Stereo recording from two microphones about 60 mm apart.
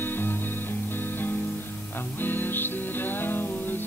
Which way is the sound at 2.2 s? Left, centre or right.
Left.